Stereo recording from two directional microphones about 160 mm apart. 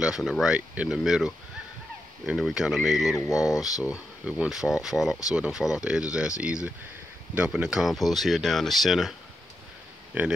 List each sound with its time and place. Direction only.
0.0 s speech: centre (ahead or behind)
3.2 s speech: 20° left (ahead or behind)
3.8 s speech: 5° right (ahead or behind)
10.1 s speech: 10° right (ahead or behind)